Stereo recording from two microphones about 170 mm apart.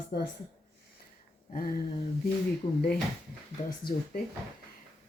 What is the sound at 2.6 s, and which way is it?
Speech, 45° left (ahead or behind).